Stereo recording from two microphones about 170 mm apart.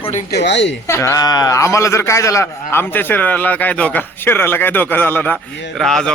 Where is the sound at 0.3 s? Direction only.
85° left.